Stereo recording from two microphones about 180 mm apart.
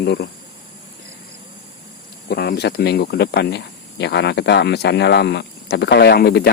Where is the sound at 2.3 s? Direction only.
65° left (ahead or behind).